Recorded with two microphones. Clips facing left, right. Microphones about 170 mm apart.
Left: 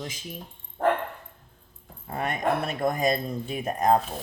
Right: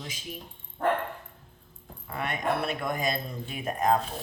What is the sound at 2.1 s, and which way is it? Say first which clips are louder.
Speech: left 3 dB; 40° left (ahead or behind).